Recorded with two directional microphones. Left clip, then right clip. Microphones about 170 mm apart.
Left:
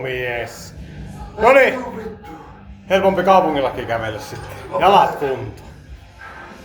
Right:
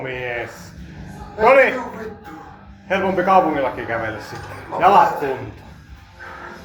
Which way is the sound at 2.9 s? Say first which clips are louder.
Left 3 dB; 30° left (ahead or behind).